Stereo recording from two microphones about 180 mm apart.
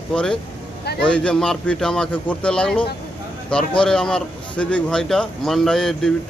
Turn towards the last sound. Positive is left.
turn(degrees=5)  # may be behind; listen again after turning